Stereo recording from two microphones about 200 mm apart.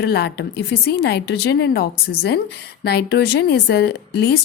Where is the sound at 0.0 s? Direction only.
55° left (ahead or behind).